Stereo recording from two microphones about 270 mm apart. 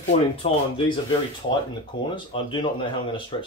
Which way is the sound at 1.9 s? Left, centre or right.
Centre.